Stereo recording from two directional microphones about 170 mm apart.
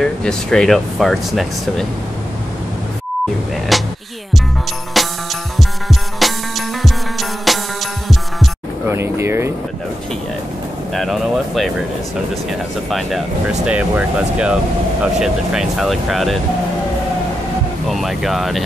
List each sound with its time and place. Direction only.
0.0 s speech: 5° left (ahead or behind)
3.7 s music: centre (ahead or behind)
4.9 s music: centre (ahead or behind)
8.8 s a sound: 15° right (ahead or behind)
11.0 s speech: centre (ahead or behind)
17.8 s speech: centre (ahead or behind)